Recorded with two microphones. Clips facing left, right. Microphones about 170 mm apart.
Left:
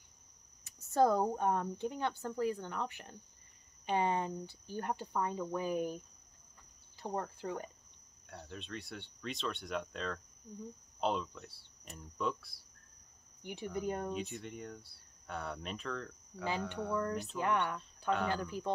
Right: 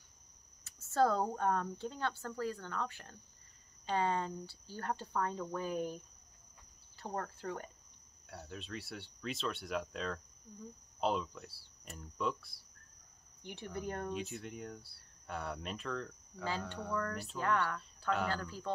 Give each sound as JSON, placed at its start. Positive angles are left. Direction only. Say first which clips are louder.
{"t": 0.7, "sound": "speech", "louder": "left 2 dB", "side_deg": 15}
{"t": 7.0, "sound": "speech", "louder": "left 2 dB", "side_deg": 15}
{"t": 8.3, "sound": "speech", "louder": "even", "side_deg": -5}
{"t": 13.4, "sound": "speech", "louder": "left 4 dB", "side_deg": 15}
{"t": 14.1, "sound": "speech", "louder": "left 1 dB", "side_deg": 0}
{"t": 16.4, "sound": "speech", "louder": "left 3 dB", "side_deg": 15}